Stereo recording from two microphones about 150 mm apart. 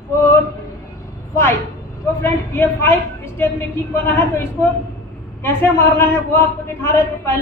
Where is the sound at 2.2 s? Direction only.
15° left (ahead or behind).